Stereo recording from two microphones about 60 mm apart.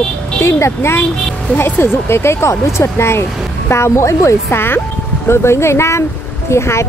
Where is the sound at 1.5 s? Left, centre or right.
Left.